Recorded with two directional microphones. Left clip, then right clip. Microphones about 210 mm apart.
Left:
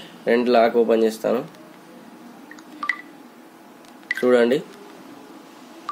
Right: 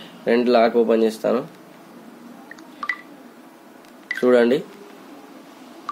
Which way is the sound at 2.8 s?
15° left (ahead or behind).